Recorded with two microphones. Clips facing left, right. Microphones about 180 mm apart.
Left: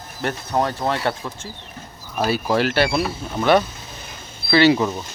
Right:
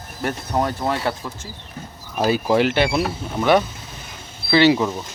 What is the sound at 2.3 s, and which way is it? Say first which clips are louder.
Speech: right 3 dB; 20° right (ahead or behind).